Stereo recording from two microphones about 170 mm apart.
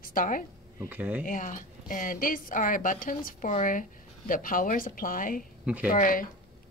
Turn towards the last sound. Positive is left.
turn(degrees=50)  # may be behind; listen again after turning